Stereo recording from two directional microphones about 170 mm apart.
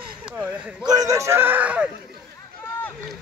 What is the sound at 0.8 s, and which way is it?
A man's voice, 20° right (ahead or behind).